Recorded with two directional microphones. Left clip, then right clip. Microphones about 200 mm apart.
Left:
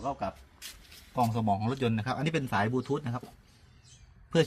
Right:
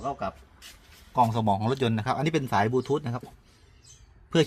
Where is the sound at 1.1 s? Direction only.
20° right (ahead or behind).